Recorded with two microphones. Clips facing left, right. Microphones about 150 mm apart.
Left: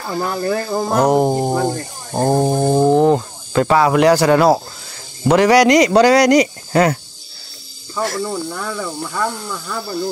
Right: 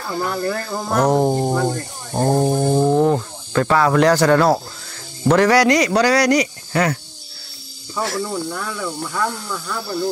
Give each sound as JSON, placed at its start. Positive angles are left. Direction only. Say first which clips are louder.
{"t": 0.0, "sound": "speech", "louder": "left 1 dB", "side_deg": 10}
{"t": 2.8, "sound": "a sound", "louder": "left 4 dB", "side_deg": 10}
{"t": 3.6, "sound": "speech", "louder": "left 2 dB", "side_deg": 10}
{"t": 7.9, "sound": "speech", "louder": "left 2 dB", "side_deg": 0}